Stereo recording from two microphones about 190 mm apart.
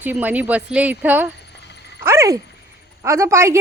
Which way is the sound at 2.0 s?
15° right (ahead or behind).